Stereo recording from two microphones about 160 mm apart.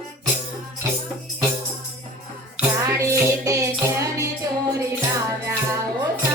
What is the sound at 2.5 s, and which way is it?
Music, 20° right (ahead or behind).